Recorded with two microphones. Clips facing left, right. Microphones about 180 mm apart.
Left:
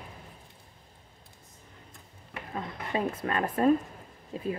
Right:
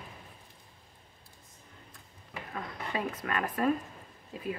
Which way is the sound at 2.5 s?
25° left (ahead or behind).